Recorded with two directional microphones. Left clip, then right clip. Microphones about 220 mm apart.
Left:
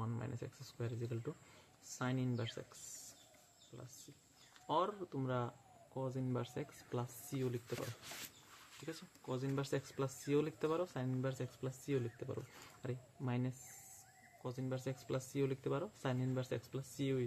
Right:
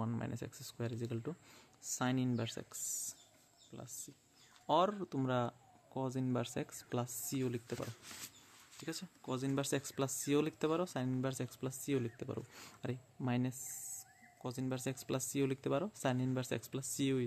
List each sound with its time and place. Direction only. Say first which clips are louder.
0.0 s speech: right 4 dB; 45° right (ahead or behind)
8.8 s speech: right 3 dB; 45° right (ahead or behind)